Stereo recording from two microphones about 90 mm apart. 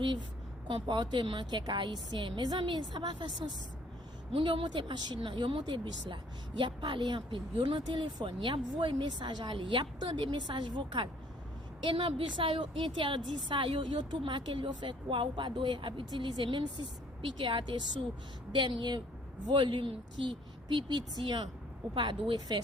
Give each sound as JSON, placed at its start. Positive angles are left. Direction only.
{"t": 0.7, "sound": "a woman's voice", "side_deg": -60}
{"t": 4.4, "sound": "a woman's voice", "side_deg": -65}